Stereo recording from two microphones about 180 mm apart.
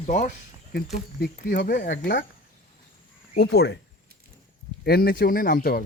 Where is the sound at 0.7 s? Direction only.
60° left (ahead or behind).